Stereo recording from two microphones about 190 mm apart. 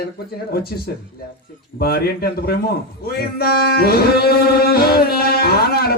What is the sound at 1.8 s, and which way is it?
Speech, 55° left (ahead or behind).